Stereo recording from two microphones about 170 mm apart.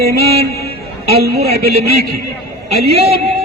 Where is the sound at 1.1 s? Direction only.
70° right (ahead or behind).